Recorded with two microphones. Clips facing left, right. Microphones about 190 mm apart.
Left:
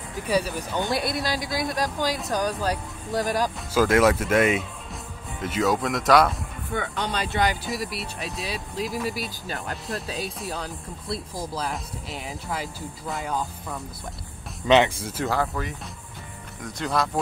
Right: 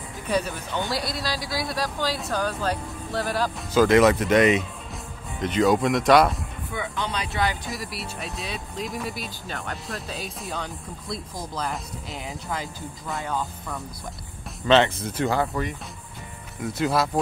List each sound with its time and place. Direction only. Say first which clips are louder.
0.7 s speech: left 2 dB; 20° left (ahead or behind); by 6.3 s centre (ahead or behind)
6.7 s speech: left 2 dB; 55° left (ahead or behind)
7.6 s speech: left 3 dB; centre (ahead or behind)